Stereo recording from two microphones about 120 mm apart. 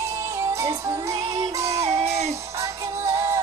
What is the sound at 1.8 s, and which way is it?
Music, 65° right (ahead or behind).